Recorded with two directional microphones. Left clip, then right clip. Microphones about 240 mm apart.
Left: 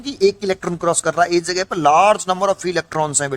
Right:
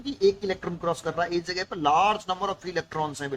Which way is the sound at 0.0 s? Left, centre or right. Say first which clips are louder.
Left 7 dB; left.